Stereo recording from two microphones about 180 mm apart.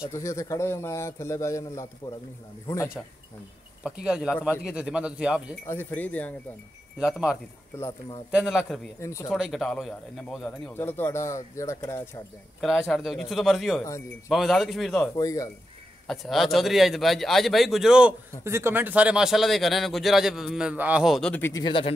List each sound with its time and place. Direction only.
0.0 s a man's voice: 15° left (ahead or behind)
3.8 s speech: 5° right (ahead or behind)
5.7 s a man's voice: 10° left (ahead or behind)
7.0 s speech: 5° right (ahead or behind)
9.0 s a man's voice: 15° left (ahead or behind)
9.3 s a man's voice: centre (ahead or behind); by 12.2 s 15° left (ahead or behind)
12.5 s speech: centre (ahead or behind)
15.1 s speech: 20° left (ahead or behind)
16.1 s speech: centre (ahead or behind)
21.6 s speech: 30° left (ahead or behind)